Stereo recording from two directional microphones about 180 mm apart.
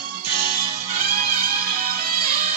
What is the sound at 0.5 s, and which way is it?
Music, 30° right (ahead or behind).